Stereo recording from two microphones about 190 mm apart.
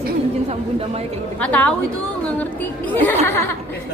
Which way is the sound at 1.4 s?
5° left (ahead or behind).